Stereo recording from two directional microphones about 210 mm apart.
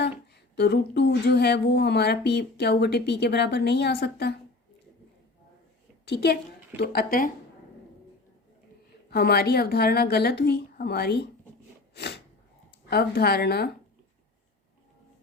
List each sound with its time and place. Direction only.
0.5 s a woman's voice: 55° left (ahead or behind)
6.1 s a woman's voice: 50° left (ahead or behind)
9.0 s a woman's voice: 50° left (ahead or behind)
11.9 s sneeze: 55° left (ahead or behind)
12.9 s a woman's voice: 50° left (ahead or behind)